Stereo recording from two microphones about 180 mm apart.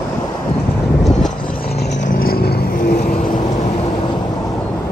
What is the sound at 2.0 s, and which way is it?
Vehicle, 55° left (ahead or behind).